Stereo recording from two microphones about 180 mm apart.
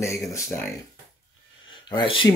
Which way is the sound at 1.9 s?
25° left (ahead or behind).